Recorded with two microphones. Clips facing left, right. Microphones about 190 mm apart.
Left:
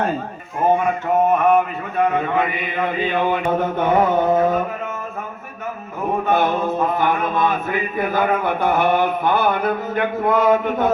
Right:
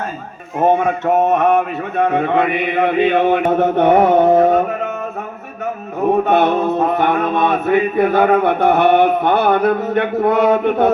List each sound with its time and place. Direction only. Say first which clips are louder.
1.0 s mantra: right 2 dB; 75° right (ahead or behind)
6.2 s mantra: right 4 dB; 70° right (ahead or behind)